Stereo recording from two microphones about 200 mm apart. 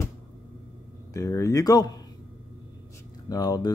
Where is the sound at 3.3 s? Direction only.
20° left (ahead or behind).